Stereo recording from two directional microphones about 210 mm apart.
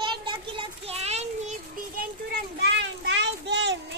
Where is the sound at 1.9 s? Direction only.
50° right (ahead or behind).